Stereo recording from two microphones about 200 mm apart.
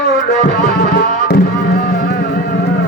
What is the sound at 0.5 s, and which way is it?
Music, 50° left (ahead or behind).